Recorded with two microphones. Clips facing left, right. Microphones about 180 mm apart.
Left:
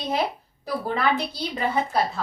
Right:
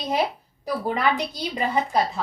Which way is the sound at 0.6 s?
15° right (ahead or behind).